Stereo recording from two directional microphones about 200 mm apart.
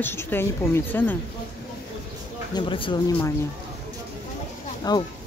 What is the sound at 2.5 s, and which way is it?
Speech, 25° left (ahead or behind).